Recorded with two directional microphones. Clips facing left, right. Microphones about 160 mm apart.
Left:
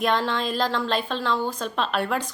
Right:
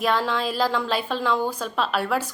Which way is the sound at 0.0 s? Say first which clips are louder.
Even; 5° right (ahead or behind).